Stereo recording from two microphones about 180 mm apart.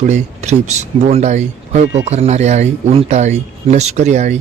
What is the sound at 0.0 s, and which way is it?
Speech, 40° right (ahead or behind).